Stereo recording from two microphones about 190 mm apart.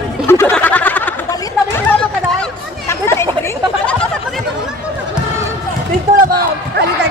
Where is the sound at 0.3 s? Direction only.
10° left (ahead or behind).